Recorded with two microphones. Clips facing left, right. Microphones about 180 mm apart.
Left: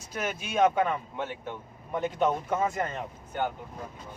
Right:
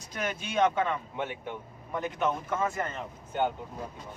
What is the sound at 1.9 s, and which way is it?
Speech, 20° left (ahead or behind).